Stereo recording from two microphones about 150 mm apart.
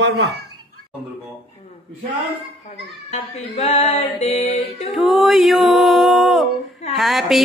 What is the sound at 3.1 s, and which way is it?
Music, 45° left (ahead or behind).